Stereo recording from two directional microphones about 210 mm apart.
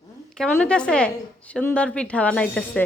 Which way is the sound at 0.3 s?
5° left (ahead or behind).